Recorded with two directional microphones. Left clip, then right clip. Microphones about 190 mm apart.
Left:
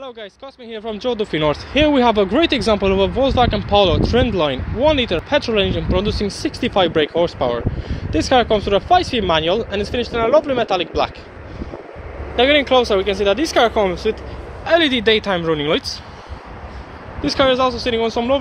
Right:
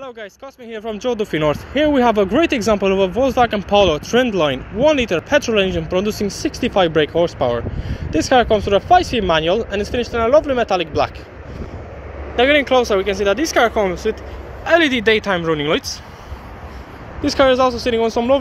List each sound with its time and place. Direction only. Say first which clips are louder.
0.0 s speech: right 1 dB; 5° right (ahead or behind)
1.7 s speech: left 1 dB; 5° left (ahead or behind)
12.4 s speech: even; 5° right (ahead or behind)
17.2 s speech: right 2 dB; 25° right (ahead or behind)